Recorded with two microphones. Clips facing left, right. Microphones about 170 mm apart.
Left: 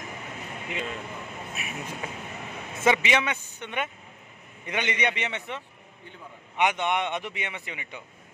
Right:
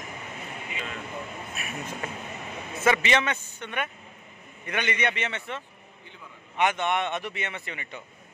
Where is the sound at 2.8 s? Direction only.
15° left (ahead or behind).